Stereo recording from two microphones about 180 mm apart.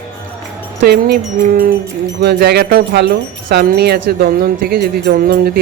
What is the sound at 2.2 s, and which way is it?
Speech, 65° right (ahead or behind).